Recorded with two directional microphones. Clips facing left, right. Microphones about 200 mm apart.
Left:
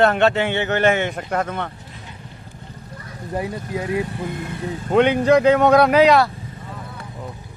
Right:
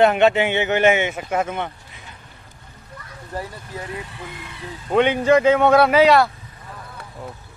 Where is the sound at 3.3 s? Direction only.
15° left (ahead or behind).